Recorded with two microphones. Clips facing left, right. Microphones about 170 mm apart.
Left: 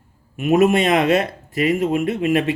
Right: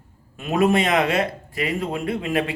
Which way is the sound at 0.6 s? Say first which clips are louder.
Even; 20° left (ahead or behind).